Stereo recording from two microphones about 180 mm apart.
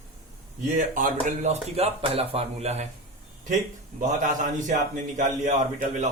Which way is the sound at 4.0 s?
45° right (ahead or behind).